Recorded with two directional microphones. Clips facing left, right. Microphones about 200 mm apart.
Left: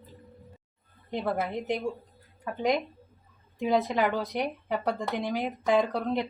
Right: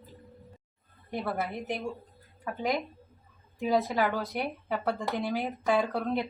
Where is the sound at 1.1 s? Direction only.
20° left (ahead or behind).